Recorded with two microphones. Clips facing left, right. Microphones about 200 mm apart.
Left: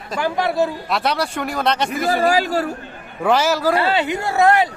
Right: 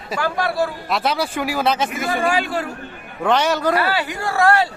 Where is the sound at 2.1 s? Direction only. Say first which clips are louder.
Left 4 dB; 40° left (ahead or behind).